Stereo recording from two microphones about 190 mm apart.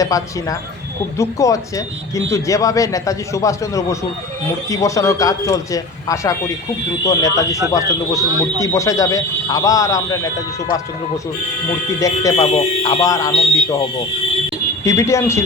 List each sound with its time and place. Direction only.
0.0 s speech: 20° left (ahead or behind)
11.9 s speech: 15° left (ahead or behind)
14.8 s speech: 15° left (ahead or behind)